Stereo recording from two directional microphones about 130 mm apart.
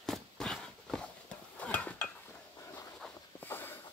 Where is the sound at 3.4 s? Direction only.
15° left (ahead or behind).